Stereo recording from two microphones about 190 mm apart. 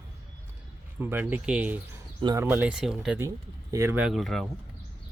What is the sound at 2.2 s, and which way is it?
Speech, 20° right (ahead or behind).